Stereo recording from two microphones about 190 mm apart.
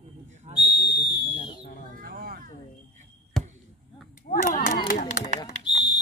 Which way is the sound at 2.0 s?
50° right (ahead or behind).